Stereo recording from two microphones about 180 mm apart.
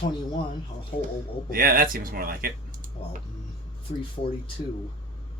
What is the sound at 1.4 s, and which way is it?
Speech, 50° right (ahead or behind).